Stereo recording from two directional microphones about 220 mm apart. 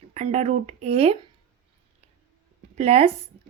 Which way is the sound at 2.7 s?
30° right (ahead or behind).